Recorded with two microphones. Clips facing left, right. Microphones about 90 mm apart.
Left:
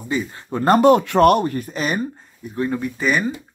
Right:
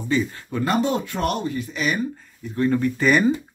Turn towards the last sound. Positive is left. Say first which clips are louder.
# right 2 dB
turn(degrees=5)  # may be behind; listen again after turning